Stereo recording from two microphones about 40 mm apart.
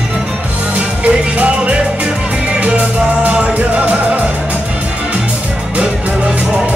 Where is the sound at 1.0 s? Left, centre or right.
Right.